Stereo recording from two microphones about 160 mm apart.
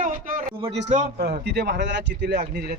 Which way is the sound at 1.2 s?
90° right.